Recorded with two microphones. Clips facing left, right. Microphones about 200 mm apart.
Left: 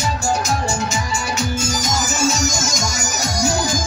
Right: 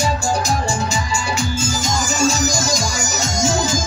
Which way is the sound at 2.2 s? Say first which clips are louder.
Right 3 dB; 35° right (ahead or behind).